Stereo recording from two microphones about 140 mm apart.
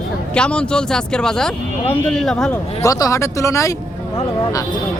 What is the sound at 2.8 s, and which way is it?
Speech, 25° left (ahead or behind).